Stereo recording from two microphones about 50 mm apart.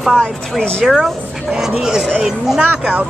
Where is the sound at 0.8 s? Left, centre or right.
Centre.